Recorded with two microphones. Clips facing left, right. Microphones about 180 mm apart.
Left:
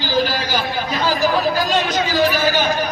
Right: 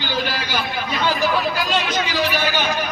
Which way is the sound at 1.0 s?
40° left (ahead or behind).